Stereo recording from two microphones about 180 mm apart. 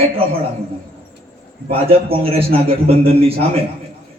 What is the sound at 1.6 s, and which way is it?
A man's voice, 30° right (ahead or behind).